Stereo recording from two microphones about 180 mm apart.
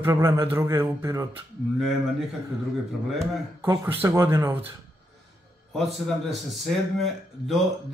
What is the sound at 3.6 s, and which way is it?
Speech, 15° right (ahead or behind).